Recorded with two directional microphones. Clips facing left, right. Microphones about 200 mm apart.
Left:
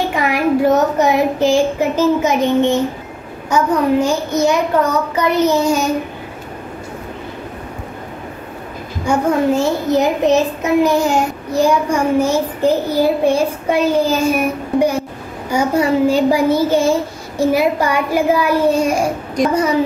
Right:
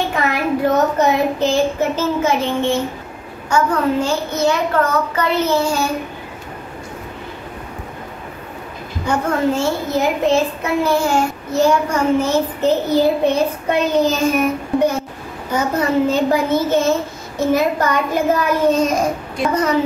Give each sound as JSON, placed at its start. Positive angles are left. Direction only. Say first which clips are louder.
{"t": 0.1, "sound": "a sound", "louder": "left 2 dB", "side_deg": 15}
{"t": 0.9, "sound": "a child's voice", "louder": "left 2 dB", "side_deg": 15}
{"t": 9.0, "sound": "a child's voice", "louder": "left 3 dB", "side_deg": 15}